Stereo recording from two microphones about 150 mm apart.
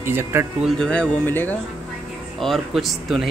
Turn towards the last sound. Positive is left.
turn(degrees=0)  # may be behind; listen again after turning